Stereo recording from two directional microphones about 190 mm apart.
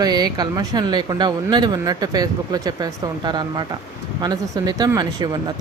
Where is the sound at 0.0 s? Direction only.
20° right (ahead or behind).